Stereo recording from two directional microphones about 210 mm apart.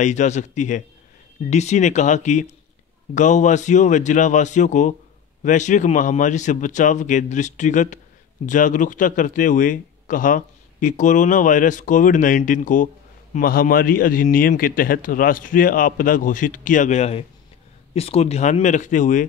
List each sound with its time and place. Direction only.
0.0 s speech: 35° left (ahead or behind)